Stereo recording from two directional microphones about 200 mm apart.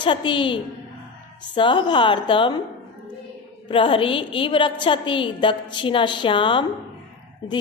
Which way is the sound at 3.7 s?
25° left (ahead or behind).